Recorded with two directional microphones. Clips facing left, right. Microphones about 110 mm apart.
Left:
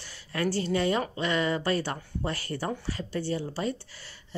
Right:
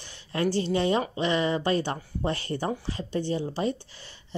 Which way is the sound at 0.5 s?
20° right (ahead or behind).